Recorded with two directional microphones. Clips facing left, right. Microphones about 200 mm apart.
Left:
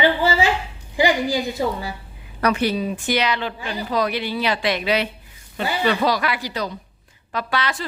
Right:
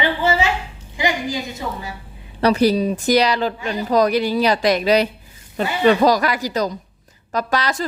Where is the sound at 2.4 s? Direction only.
35° right (ahead or behind).